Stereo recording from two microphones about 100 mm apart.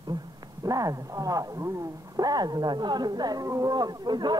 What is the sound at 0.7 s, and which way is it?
Speech, 35° right (ahead or behind).